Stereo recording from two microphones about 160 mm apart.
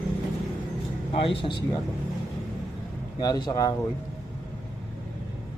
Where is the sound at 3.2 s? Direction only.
25° left (ahead or behind).